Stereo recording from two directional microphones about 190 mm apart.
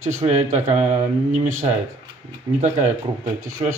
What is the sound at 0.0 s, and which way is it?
Speech, 35° right (ahead or behind).